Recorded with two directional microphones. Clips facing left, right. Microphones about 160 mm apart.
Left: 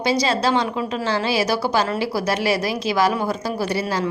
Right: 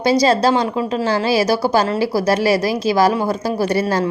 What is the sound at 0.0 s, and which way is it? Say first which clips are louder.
A woman's voice: right 6 dB; 40° right (ahead or behind).